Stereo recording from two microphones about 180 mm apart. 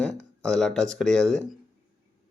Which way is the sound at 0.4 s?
5° left (ahead or behind).